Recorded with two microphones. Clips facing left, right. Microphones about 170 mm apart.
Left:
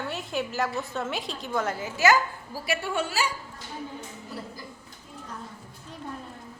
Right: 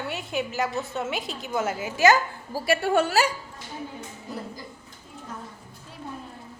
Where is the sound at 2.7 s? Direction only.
60° right (ahead or behind).